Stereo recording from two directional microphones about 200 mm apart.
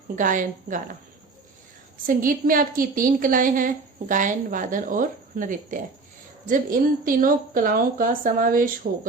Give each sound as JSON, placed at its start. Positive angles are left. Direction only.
{"t": 0.2, "sound": "a woman's voice", "side_deg": -40}
{"t": 2.0, "sound": "a woman's voice", "side_deg": -45}